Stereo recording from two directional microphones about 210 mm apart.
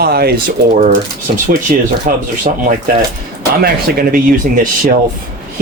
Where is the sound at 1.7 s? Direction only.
40° right (ahead or behind).